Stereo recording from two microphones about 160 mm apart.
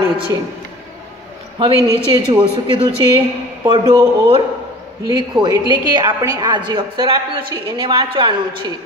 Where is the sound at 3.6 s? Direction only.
25° right (ahead or behind).